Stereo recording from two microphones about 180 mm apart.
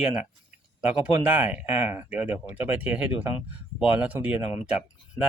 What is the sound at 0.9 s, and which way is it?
Speech, 10° right (ahead or behind).